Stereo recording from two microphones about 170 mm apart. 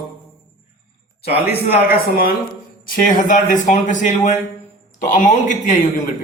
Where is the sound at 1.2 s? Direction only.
65° left (ahead or behind).